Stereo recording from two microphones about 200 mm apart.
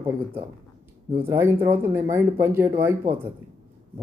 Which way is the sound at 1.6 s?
10° right (ahead or behind).